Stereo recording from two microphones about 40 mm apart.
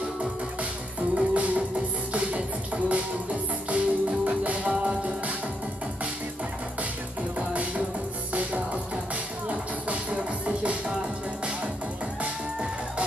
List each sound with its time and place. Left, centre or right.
1.1 s music: right
7.3 s music: right